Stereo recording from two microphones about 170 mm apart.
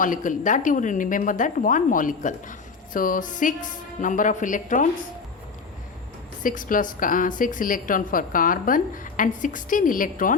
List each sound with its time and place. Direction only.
0.0 s a woman's voice: 50° left (ahead or behind)
6.4 s a woman's voice: 55° left (ahead or behind)